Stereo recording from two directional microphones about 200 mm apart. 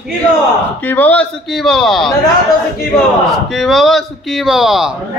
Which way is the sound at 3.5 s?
Centre (ahead or behind).